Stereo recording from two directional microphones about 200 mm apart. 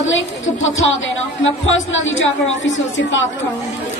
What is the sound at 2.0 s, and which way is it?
A man's voice, 70° left (ahead or behind).